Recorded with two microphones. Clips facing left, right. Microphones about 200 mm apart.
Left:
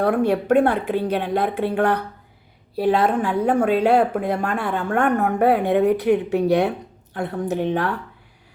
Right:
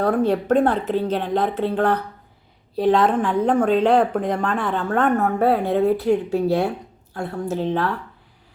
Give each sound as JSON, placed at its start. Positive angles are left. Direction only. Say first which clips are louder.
{"t": 0.1, "sound": "a woman's voice", "louder": "left 1 dB", "side_deg": 10}